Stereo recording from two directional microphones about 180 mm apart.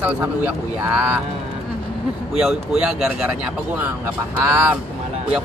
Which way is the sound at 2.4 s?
5° right (ahead or behind).